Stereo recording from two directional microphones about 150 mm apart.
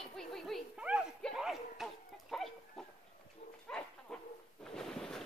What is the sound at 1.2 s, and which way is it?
Bow-wow, centre (ahead or behind).